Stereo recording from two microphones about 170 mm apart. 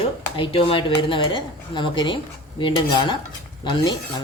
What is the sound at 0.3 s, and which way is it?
Speech, 30° left (ahead or behind).